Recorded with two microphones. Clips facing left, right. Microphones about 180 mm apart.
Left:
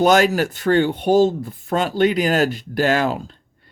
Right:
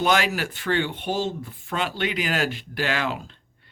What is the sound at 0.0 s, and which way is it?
Speech, 45° left (ahead or behind).